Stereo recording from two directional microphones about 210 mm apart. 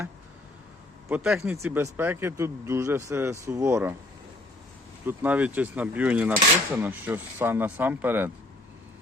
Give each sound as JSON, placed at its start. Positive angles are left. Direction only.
{"t": 1.0, "sound": "speech", "side_deg": -5}
{"t": 5.0, "sound": "speech", "side_deg": -5}